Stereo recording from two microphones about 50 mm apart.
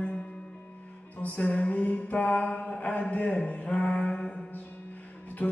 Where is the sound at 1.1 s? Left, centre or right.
Left.